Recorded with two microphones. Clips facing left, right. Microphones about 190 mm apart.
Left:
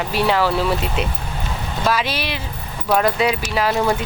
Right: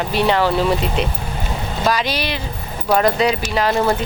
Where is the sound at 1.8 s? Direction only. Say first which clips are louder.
Right 1 dB; 5° left (ahead or behind).